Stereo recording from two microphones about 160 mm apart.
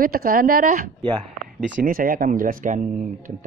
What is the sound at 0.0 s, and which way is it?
Speech, 65° right (ahead or behind).